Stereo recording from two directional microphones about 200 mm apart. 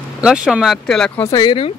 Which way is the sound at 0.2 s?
5° right (ahead or behind).